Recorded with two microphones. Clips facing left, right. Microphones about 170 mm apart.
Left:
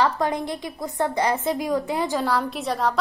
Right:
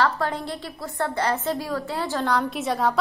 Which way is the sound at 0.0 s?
15° left (ahead or behind).